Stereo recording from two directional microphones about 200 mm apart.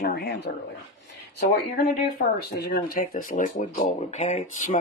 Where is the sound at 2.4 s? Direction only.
55° left (ahead or behind).